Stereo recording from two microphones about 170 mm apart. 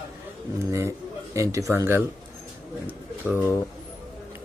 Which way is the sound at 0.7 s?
15° right (ahead or behind).